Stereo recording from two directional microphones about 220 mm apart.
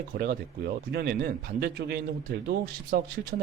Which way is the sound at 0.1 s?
45° right (ahead or behind).